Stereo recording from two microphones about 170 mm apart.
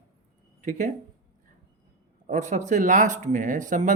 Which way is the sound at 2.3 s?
45° right (ahead or behind).